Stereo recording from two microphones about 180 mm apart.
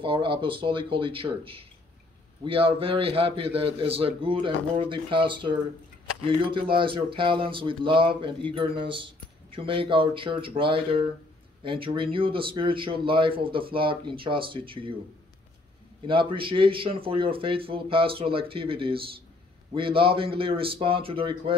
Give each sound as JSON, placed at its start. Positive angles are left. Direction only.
{"t": 0.0, "sound": "speech", "side_deg": -30}
{"t": 16.1, "sound": "speech", "side_deg": -30}